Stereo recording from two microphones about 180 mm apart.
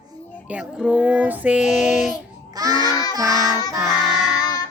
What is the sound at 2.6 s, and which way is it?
Child singing, 20° right (ahead or behind).